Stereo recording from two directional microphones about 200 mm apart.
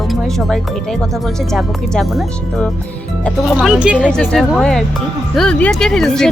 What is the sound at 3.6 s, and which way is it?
Speech, 5° right (ahead or behind).